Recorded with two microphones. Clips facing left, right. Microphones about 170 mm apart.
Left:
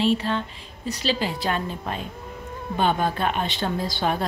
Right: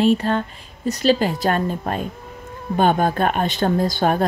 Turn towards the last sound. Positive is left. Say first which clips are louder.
# right 6 dB
turn(degrees=-45)  # may be behind; listen again after turning